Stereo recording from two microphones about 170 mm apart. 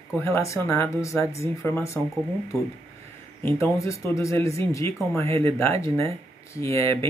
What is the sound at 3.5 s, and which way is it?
Speech, 15° left (ahead or behind).